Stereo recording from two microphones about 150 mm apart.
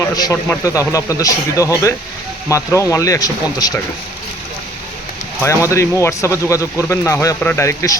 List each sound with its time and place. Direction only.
0.0 s speech: 25° left (ahead or behind)
5.4 s speech: 20° left (ahead or behind)